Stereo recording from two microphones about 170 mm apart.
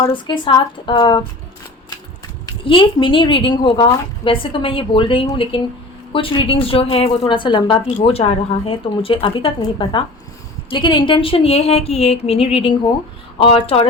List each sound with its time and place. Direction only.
0.0 s a woman's voice: 30° left (ahead or behind)
2.5 s a woman's voice: 30° left (ahead or behind)